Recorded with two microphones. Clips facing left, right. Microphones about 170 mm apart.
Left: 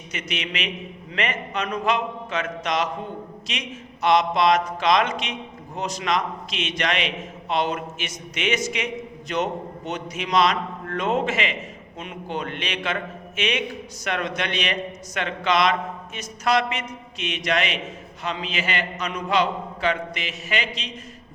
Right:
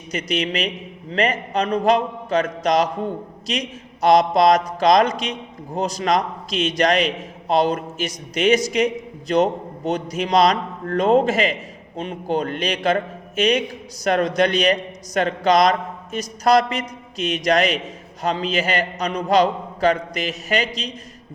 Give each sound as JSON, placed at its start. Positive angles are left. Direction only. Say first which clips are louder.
{"t": 0.1, "sound": "speech", "louder": "right 8 dB", "side_deg": -35}